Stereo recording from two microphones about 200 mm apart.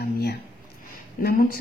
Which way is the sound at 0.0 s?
50° left (ahead or behind).